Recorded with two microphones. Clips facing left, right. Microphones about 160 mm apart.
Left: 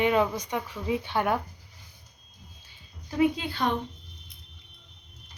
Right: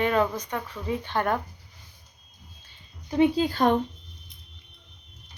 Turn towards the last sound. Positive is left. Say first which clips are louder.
# right 6 dB
turn(degrees=-45)  # may be behind; listen again after turning